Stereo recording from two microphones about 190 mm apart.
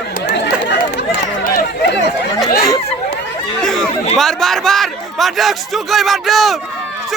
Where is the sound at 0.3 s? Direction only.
60° left (ahead or behind).